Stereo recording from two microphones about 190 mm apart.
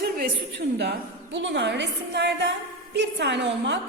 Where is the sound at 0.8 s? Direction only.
65° right (ahead or behind).